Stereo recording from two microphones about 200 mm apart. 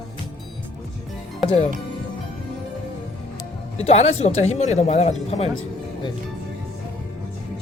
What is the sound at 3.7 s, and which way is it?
Speech, 30° left (ahead or behind).